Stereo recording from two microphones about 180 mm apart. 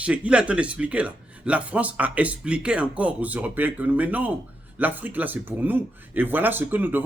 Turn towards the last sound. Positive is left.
turn(degrees=-10)  # may be behind; listen again after turning